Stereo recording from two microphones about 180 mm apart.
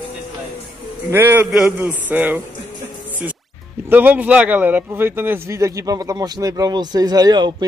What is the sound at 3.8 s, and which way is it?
Speech, 10° right (ahead or behind).